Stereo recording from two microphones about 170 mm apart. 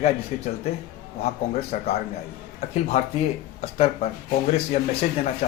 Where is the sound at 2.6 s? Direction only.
40° left (ahead or behind).